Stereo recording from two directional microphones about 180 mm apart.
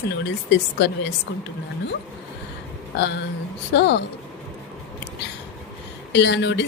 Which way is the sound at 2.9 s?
75° left (ahead or behind).